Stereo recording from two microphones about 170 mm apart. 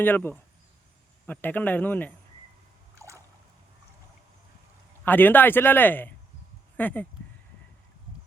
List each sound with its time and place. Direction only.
0.0 s speech: 10° left (ahead or behind)
2.9 s a sound: 20° right (ahead or behind)
5.0 s speech: 10° left (ahead or behind)